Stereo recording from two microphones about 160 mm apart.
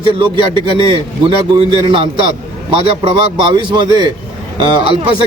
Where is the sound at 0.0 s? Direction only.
30° right (ahead or behind).